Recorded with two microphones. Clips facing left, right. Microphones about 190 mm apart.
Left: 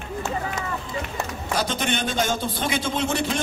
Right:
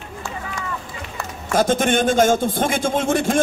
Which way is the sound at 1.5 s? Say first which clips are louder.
Right 8 dB; 50° right (ahead or behind).